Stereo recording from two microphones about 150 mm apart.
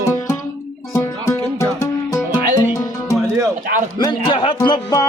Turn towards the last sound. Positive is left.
turn(degrees=30)  # may be behind; listen again after turning